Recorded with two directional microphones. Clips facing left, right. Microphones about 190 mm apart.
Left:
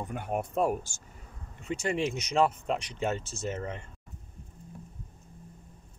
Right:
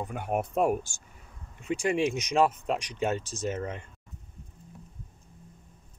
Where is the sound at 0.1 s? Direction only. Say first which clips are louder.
Right 2 dB; 15° right (ahead or behind).